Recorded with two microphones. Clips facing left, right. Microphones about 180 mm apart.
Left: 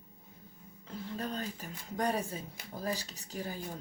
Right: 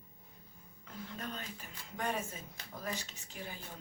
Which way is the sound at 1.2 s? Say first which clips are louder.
Left 7 dB; 35° left (ahead or behind).